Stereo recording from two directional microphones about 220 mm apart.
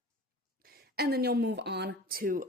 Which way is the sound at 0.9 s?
45° right (ahead or behind).